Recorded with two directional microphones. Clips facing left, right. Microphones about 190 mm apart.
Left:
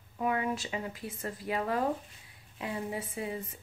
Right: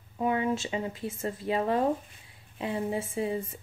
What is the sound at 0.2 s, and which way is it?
A woman's voice, 25° right (ahead or behind).